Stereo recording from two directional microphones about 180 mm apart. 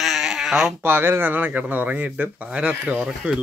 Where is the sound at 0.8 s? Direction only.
10° right (ahead or behind).